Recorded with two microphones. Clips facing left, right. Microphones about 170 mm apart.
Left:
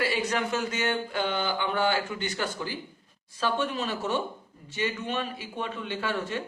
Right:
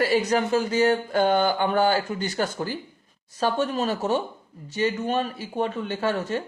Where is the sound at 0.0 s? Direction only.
40° right (ahead or behind).